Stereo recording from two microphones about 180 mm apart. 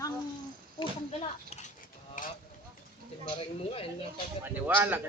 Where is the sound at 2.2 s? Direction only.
45° left (ahead or behind).